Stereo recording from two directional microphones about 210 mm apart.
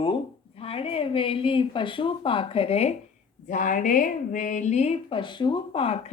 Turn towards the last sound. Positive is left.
turn(degrees=30)  # may be behind; listen again after turning